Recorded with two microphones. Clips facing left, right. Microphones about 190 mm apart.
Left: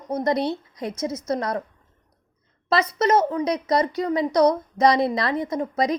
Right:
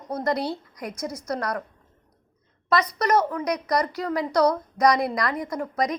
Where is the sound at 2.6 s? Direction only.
25° left (ahead or behind).